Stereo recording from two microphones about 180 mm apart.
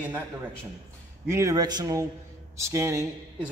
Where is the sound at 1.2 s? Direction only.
15° right (ahead or behind).